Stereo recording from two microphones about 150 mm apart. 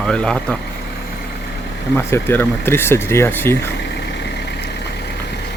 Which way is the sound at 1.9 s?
15° left (ahead or behind).